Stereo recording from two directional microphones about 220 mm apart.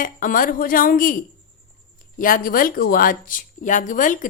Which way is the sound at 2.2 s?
40° left (ahead or behind).